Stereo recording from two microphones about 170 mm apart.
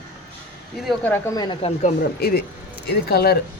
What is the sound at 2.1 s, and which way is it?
Speech, 65° left (ahead or behind).